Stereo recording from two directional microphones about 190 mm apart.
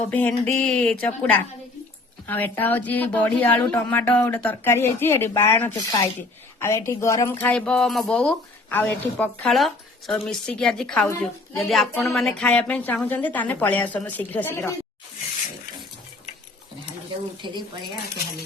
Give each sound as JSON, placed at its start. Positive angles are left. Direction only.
{"t": 0.0, "sound": "a woman's voice", "side_deg": 10}
{"t": 17.4, "sound": "speech", "side_deg": -25}